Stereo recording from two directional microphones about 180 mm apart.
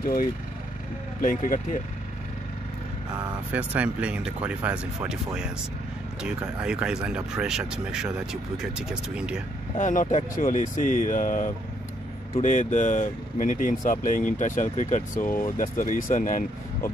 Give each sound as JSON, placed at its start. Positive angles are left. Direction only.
{"t": 0.0, "sound": "speech", "side_deg": 50}
{"t": 3.5, "sound": "speech", "side_deg": -5}
{"t": 9.8, "sound": "speech", "side_deg": 45}